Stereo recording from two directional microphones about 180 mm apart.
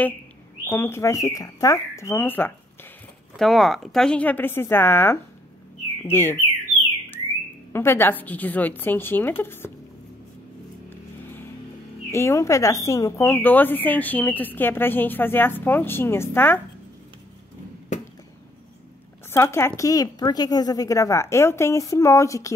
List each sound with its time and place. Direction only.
0.7 s speech: 15° left (ahead or behind)
3.3 s speech: centre (ahead or behind)
7.7 s speech: 15° left (ahead or behind)
10.9 s vehicle: 10° left (ahead or behind)
12.1 s speech: 15° left (ahead or behind)
19.3 s speech: 15° left (ahead or behind)